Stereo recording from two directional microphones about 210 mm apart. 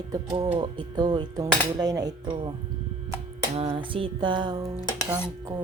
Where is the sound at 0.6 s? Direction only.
20° right (ahead or behind).